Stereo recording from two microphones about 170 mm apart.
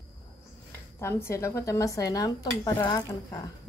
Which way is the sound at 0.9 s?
15° left (ahead or behind).